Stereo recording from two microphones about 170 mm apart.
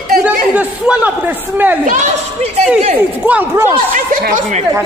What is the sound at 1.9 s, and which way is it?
Speech, 40° right (ahead or behind).